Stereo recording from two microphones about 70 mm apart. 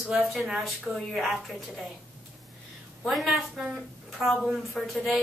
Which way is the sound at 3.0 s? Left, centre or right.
Centre.